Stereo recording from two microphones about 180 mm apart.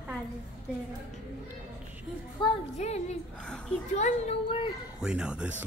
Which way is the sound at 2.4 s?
25° left (ahead or behind).